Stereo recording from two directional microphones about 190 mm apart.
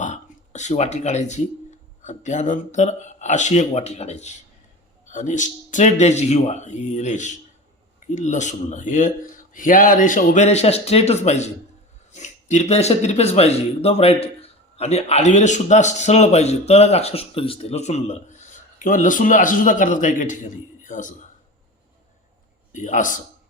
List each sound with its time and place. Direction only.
0.0 s a sound: 40° left (ahead or behind)
2.0 s speech: 40° left (ahead or behind)
22.7 s speech: 40° left (ahead or behind)